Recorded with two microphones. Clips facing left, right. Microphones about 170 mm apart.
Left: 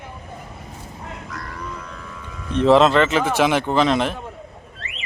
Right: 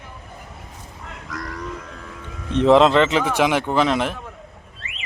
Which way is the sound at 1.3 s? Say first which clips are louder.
Right 6 dB; 45° right (ahead or behind).